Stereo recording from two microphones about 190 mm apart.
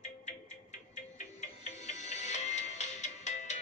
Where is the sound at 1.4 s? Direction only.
35° left (ahead or behind).